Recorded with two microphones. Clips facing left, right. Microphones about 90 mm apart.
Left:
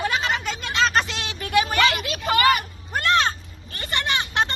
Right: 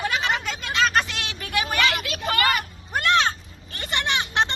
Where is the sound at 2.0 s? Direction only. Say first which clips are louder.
Left 3 dB; 20° left (ahead or behind).